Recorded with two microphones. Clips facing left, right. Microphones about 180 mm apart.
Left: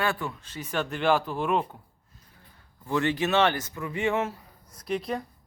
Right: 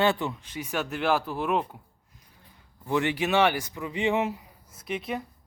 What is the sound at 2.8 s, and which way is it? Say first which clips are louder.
Speech: even; 15° right (ahead or behind).